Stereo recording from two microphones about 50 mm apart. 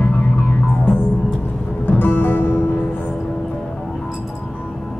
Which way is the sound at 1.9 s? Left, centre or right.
Left.